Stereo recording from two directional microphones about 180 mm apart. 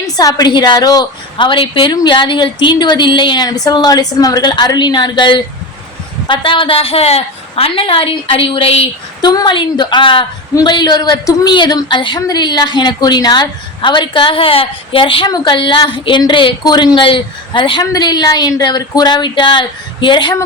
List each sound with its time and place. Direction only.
0.0 s a woman's voice: 20° left (ahead or behind)
9.2 s a woman's voice: 20° left (ahead or behind)